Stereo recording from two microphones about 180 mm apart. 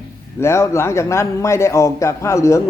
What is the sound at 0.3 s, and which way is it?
A man's voice, 15° left (ahead or behind).